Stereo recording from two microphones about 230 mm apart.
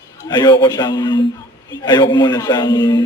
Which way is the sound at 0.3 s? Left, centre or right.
Centre.